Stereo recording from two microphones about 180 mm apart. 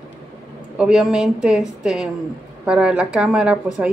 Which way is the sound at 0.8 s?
5° right (ahead or behind).